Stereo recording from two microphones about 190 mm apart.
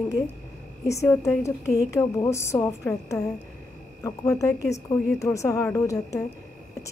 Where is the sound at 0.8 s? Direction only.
15° left (ahead or behind).